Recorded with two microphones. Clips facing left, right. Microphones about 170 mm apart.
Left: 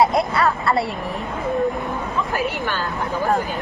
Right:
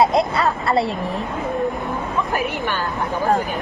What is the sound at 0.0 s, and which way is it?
Speech, 25° right (ahead or behind).